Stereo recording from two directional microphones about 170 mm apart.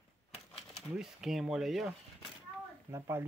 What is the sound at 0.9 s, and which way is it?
Speech, centre (ahead or behind).